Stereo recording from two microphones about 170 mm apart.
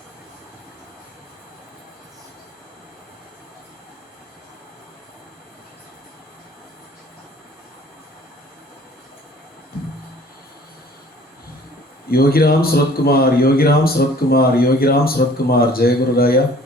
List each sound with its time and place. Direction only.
12.0 s a man's voice: 65° left (ahead or behind)